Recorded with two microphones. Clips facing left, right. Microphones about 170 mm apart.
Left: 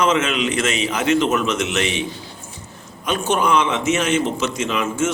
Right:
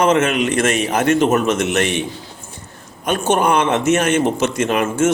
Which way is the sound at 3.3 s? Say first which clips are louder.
Right 3 dB; 55° right (ahead or behind).